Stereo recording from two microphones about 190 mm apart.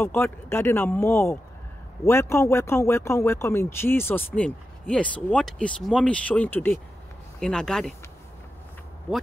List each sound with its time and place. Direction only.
0.0 s speech: 10° left (ahead or behind)